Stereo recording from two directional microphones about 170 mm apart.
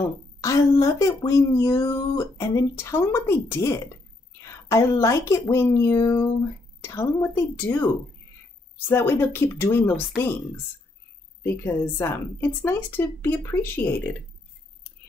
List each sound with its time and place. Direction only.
0.4 s speech: 20° left (ahead or behind)
11.4 s speech: 15° left (ahead or behind)